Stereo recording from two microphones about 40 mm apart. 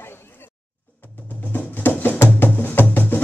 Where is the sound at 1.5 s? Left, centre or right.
Left.